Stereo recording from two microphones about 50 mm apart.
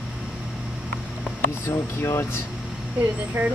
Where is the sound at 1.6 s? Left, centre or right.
Left.